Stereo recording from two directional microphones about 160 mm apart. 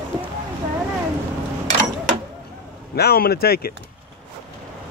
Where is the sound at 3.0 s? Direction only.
75° left (ahead or behind).